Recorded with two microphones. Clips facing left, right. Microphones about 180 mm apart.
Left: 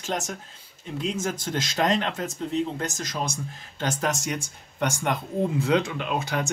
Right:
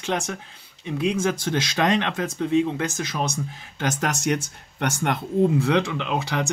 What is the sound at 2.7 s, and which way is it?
Speech, 65° right (ahead or behind).